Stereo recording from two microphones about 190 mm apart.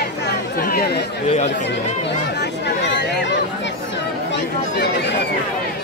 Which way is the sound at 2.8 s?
65° left (ahead or behind).